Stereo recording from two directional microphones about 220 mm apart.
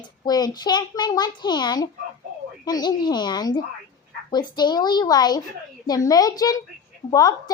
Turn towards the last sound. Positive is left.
turn(degrees=15)  # may be behind; listen again after turning